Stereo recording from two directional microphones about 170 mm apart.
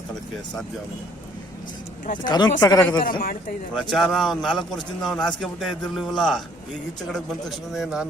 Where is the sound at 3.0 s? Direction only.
55° left (ahead or behind).